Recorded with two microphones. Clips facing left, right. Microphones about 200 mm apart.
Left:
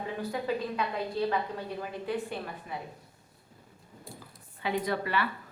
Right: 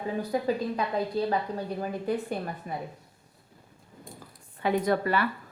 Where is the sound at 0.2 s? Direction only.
40° right (ahead or behind).